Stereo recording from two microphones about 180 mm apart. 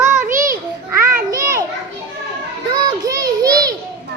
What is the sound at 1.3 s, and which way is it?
Children playing, 15° right (ahead or behind).